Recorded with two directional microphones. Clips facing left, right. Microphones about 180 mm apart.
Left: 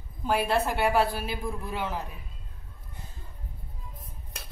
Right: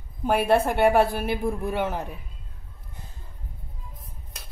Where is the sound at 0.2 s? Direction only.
55° right (ahead or behind).